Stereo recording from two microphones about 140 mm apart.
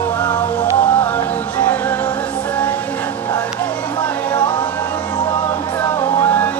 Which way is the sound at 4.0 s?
30° left (ahead or behind).